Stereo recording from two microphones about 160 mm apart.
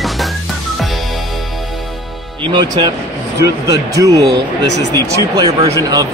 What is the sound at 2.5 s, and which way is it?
Speech, 25° right (ahead or behind).